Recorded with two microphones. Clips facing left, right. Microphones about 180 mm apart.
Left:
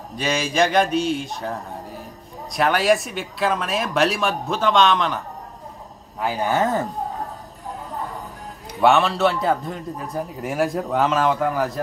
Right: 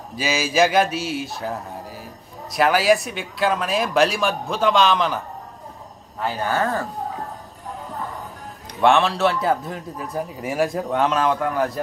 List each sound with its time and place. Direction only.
0.1 s a man's voice: 5° right (ahead or behind)
6.1 s speech: 10° left (ahead or behind)
8.8 s a man's voice: centre (ahead or behind)